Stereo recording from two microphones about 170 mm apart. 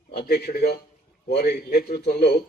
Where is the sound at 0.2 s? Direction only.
70° left (ahead or behind).